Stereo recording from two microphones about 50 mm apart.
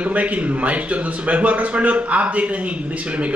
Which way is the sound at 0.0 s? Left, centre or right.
Right.